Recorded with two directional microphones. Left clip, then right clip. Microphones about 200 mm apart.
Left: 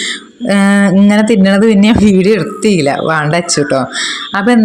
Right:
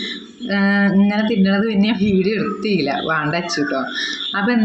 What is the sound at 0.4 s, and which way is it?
A woman's voice, 45° left (ahead or behind).